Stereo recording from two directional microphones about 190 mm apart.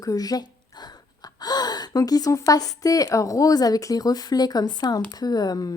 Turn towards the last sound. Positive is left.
turn(degrees=20)  # may be behind; listen again after turning